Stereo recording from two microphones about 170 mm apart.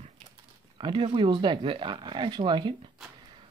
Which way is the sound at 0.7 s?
30° right (ahead or behind).